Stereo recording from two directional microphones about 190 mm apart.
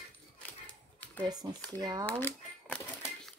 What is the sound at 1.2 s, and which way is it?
Speech, 20° right (ahead or behind).